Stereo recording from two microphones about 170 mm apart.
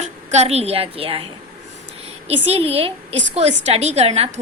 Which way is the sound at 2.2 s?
35° right (ahead or behind).